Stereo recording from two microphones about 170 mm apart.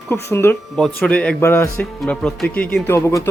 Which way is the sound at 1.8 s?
5° left (ahead or behind).